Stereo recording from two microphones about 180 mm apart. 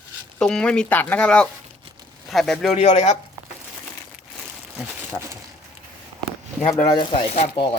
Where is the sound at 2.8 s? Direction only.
35° left (ahead or behind).